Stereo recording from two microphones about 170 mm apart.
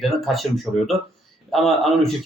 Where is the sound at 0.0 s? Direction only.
Centre (ahead or behind).